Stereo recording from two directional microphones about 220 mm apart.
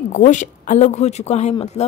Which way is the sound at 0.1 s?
35° left (ahead or behind).